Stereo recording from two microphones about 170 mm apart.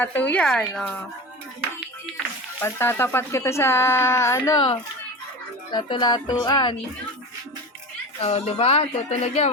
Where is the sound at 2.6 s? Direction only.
15° left (ahead or behind).